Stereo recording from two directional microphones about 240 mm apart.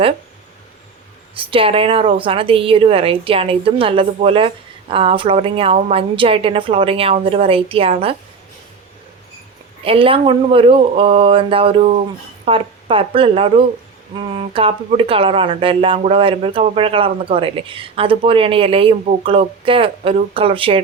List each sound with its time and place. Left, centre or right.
1.4 s a woman's voice: right
9.8 s a woman's voice: right